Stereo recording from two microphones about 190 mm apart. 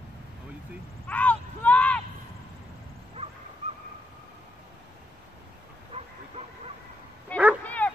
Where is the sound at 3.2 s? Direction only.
30° right (ahead or behind).